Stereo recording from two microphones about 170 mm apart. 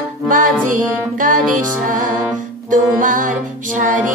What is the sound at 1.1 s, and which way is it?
Music, 50° right (ahead or behind).